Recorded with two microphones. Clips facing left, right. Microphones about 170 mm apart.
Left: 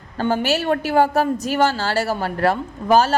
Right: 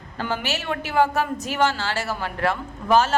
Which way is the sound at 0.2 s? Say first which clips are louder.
Left 8 dB; 40° left (ahead or behind).